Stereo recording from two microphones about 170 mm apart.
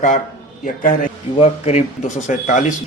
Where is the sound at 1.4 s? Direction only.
40° left (ahead or behind).